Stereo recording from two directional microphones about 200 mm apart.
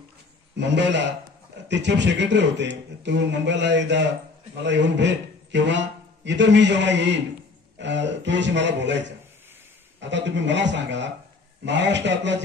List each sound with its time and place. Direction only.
0.6 s a man's voice: 60° right (ahead or behind)